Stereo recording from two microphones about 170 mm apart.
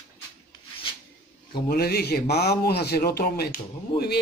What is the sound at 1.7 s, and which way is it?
A man's voice, 65° left (ahead or behind).